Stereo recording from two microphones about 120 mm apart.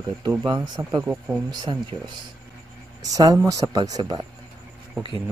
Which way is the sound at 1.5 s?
35° right (ahead or behind).